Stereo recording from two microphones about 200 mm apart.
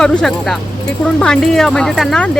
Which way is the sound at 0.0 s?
5° left (ahead or behind).